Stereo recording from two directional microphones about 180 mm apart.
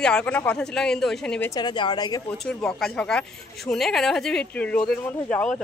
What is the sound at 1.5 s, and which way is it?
Speech, 25° left (ahead or behind).